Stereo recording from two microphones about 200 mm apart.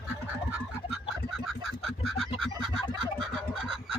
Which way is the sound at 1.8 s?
Centre (ahead or behind).